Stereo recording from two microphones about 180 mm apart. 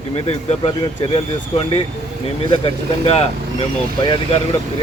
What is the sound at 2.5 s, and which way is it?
Speech, 30° left (ahead or behind).